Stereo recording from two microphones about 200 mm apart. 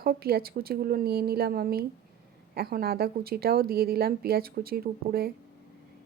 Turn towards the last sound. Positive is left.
turn(degrees=-50)  # may be behind; listen again after turning